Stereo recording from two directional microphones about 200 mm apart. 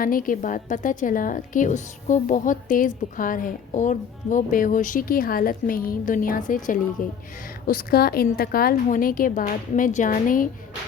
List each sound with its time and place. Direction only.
0.0 s a woman's voice: 45° left (ahead or behind)